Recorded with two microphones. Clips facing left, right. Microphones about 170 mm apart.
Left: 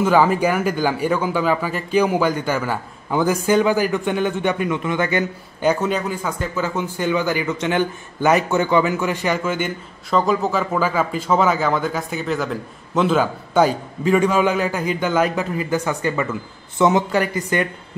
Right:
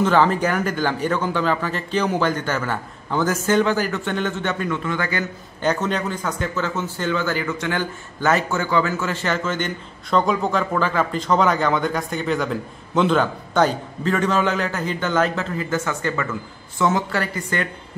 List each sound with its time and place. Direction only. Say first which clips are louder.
0.0 s a man's voice: left 2 dB; 10° left (ahead or behind)
5.6 s a man's voice: left 3 dB; 10° left (ahead or behind)